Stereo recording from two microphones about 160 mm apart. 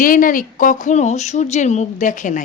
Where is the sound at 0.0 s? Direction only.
60° left (ahead or behind).